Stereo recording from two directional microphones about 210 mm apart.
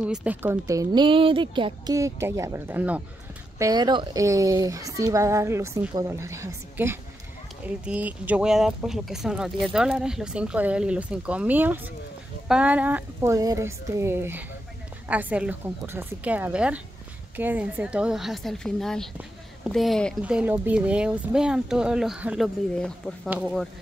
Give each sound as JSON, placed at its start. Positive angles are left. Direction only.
{"t": 0.0, "sound": "speech", "side_deg": -5}